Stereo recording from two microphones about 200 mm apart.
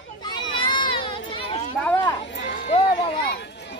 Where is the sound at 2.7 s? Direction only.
30° left (ahead or behind).